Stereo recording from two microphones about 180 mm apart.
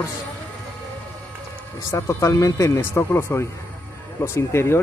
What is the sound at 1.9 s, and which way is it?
Speech, 15° left (ahead or behind).